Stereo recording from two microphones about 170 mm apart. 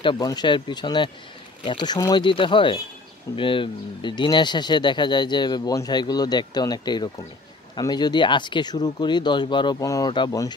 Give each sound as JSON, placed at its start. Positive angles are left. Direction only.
{"t": 0.0, "sound": "speech", "side_deg": 25}